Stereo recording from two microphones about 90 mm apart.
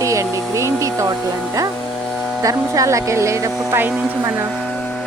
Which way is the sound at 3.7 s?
25° right (ahead or behind).